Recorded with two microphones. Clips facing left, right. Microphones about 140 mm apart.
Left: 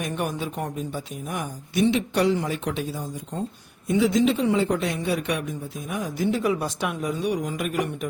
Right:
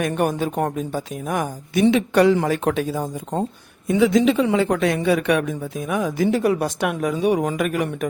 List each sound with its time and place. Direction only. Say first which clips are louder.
0.0 s speech: right 7 dB; 55° right (ahead or behind)
0.4 s a woman's voice: right 7 dB; 75° right (ahead or behind)
3.8 s a man's voice: right 4 dB; 80° right